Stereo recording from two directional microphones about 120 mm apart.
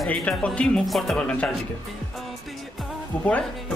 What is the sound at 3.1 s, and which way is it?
Speech, 10° left (ahead or behind).